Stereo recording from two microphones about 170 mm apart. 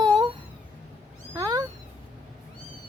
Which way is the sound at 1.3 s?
20° right (ahead or behind).